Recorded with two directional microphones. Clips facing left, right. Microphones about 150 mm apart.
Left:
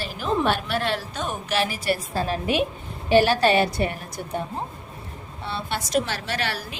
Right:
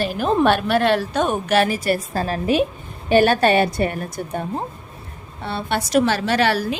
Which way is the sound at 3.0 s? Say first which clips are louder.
Right 3 dB; 50° right (ahead or behind).